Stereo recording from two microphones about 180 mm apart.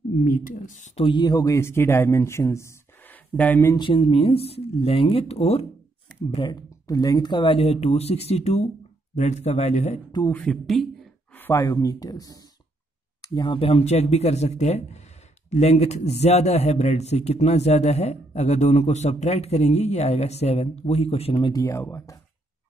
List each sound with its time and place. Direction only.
0.2 s speech: 45° left (ahead or behind)
1.0 s speech: 25° left (ahead or behind); by 3.7 s 10° left (ahead or behind)
3.7 s a man's voice: 30° left (ahead or behind)
6.3 s a man's voice: 20° left (ahead or behind); by 9.9 s 40° left (ahead or behind)
10.3 s speech: 5° left (ahead or behind)
11.3 s a man's voice: 15° left (ahead or behind); by 21.5 s 35° left (ahead or behind)
21.5 s speech: 20° left (ahead or behind)